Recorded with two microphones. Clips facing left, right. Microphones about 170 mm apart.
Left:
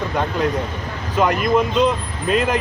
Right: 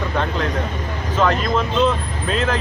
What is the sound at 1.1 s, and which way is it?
Speech, 15° left (ahead or behind).